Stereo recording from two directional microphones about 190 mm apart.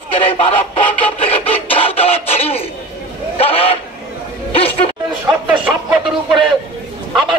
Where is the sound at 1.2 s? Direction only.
30° left (ahead or behind).